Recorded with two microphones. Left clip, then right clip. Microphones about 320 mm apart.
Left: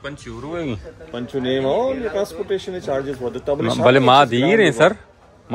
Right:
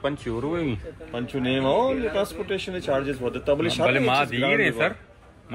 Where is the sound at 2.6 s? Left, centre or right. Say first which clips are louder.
Left 2 dB; centre.